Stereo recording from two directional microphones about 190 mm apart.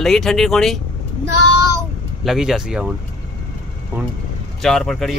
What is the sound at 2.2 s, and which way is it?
Speech, 5° right (ahead or behind).